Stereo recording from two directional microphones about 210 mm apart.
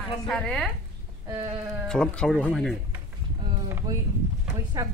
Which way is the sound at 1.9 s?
5° left (ahead or behind).